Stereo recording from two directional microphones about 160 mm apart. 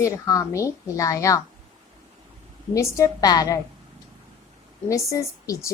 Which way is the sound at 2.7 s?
20° left (ahead or behind).